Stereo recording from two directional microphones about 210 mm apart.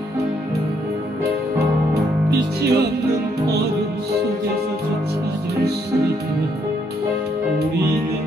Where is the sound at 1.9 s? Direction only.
50° right (ahead or behind).